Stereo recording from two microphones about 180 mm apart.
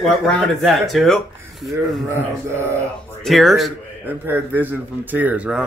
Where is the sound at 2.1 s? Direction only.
15° right (ahead or behind).